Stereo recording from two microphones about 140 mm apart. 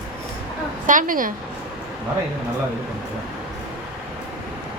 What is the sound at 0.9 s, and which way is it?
Speech, 70° right (ahead or behind).